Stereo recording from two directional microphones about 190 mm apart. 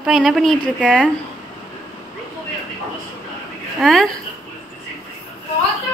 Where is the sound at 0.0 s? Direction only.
Centre (ahead or behind).